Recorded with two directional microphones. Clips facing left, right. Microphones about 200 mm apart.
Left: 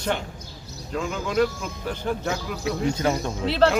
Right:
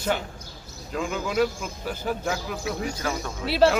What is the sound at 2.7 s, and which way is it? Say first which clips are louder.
Speech: left 6 dB; 20° left (ahead or behind).